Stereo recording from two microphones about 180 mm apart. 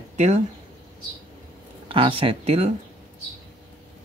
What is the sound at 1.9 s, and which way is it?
Speech, 30° right (ahead or behind).